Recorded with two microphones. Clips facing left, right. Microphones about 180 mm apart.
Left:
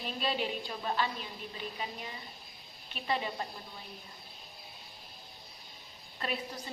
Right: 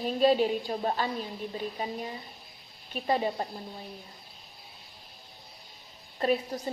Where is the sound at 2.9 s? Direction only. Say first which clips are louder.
Right 6 dB; 40° right (ahead or behind).